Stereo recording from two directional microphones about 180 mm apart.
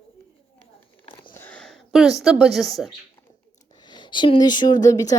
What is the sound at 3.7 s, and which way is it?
Speech, 25° left (ahead or behind).